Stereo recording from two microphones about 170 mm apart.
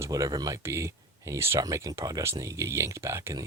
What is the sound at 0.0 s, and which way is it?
Speech, 20° right (ahead or behind).